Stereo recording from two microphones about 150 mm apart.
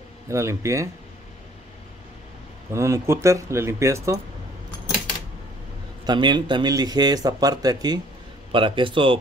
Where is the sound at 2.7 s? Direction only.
20° right (ahead or behind).